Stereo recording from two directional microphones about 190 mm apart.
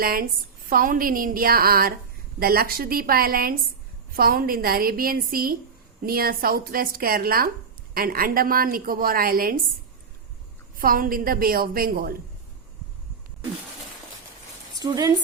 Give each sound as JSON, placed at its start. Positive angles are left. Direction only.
{"t": 0.0, "sound": "a woman's voice", "side_deg": -50}
{"t": 10.8, "sound": "a woman's voice", "side_deg": -45}
{"t": 14.8, "sound": "speech", "side_deg": -20}